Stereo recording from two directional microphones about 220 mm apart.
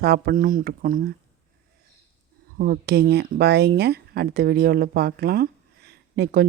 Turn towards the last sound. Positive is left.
turn(degrees=-45)  # may be behind; listen again after turning